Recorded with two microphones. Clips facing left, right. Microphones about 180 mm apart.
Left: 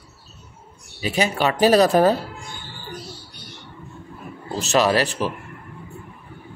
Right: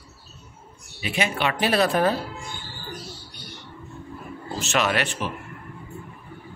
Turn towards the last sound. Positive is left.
turn(degrees=35)  # may be behind; listen again after turning